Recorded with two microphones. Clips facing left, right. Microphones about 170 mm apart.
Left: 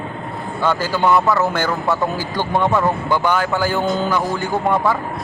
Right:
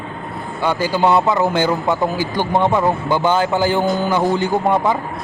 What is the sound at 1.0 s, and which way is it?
Speech, 30° right (ahead or behind).